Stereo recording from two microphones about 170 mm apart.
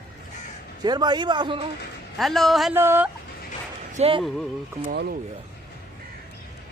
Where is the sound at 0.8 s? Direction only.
25° right (ahead or behind).